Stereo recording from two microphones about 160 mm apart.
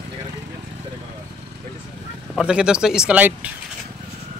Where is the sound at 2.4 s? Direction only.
5° right (ahead or behind).